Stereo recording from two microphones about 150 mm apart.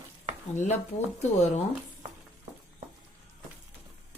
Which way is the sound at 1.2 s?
45° left (ahead or behind).